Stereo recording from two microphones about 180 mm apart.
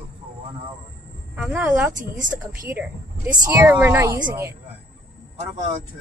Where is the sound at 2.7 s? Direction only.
10° right (ahead or behind).